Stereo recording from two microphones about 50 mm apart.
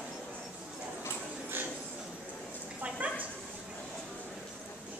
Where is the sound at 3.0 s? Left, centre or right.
Right.